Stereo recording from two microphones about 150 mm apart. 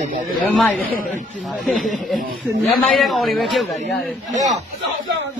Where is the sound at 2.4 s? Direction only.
Centre (ahead or behind).